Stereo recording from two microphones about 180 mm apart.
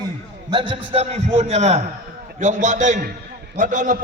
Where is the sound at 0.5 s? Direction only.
30° right (ahead or behind).